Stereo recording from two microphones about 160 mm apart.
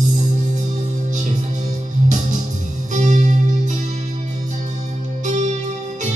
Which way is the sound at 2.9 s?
50° right (ahead or behind).